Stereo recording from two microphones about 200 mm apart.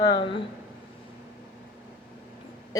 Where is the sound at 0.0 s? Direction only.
20° left (ahead or behind).